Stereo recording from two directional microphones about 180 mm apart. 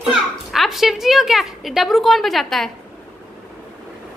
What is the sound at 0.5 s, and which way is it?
A woman's voice, centre (ahead or behind).